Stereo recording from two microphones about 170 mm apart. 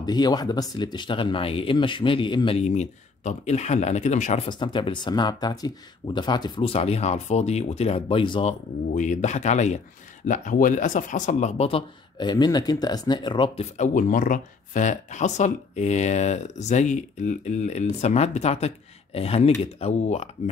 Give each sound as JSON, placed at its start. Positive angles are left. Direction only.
{"t": 0.0, "sound": "speech", "side_deg": 25}
{"t": 4.5, "sound": "speech", "side_deg": 30}
{"t": 8.9, "sound": "speech", "side_deg": 45}
{"t": 13.7, "sound": "speech", "side_deg": 50}